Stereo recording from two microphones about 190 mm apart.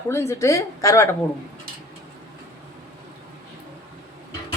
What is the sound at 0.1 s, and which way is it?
Speech, 15° left (ahead or behind).